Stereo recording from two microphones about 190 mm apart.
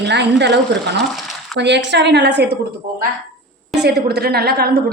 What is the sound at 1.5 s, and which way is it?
A woman's voice, 65° right (ahead or behind).